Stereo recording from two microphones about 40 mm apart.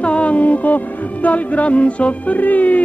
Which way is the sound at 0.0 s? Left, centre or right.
Left.